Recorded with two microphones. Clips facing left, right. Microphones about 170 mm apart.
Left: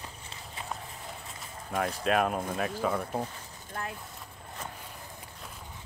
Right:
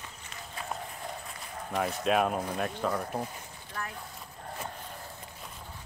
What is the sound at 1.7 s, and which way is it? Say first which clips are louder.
Speech: even; centre (ahead or behind).